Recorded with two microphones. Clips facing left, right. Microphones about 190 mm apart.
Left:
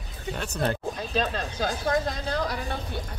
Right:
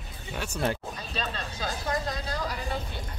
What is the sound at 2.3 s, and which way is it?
Speech, 70° left (ahead or behind).